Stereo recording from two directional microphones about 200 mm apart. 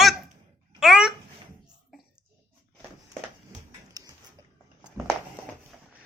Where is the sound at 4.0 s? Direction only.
20° right (ahead or behind).